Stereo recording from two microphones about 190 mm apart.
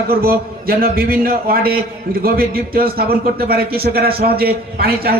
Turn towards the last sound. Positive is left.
turn(degrees=-55)  # may be behind; listen again after turning